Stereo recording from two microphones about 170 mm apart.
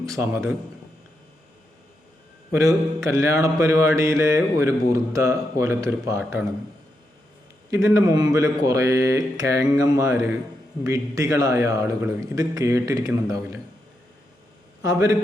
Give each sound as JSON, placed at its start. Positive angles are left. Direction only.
{"t": 0.0, "sound": "mantra", "side_deg": -15}
{"t": 2.5, "sound": "mantra", "side_deg": -20}
{"t": 7.7, "sound": "speech", "side_deg": -20}
{"t": 14.8, "sound": "speech", "side_deg": -20}